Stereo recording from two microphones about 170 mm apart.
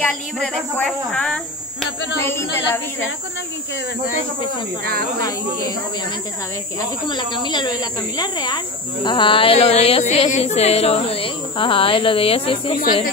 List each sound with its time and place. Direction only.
0.0 s speech: 5° left (ahead or behind)
2.2 s speech: 15° left (ahead or behind)
7.1 s speech: 25° left (ahead or behind)